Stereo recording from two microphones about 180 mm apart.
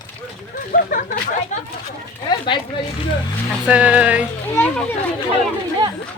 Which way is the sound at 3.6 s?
5° right (ahead or behind).